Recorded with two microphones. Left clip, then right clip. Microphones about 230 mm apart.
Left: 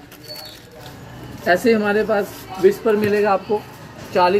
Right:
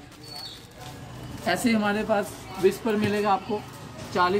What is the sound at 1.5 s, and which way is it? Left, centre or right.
Speech, right.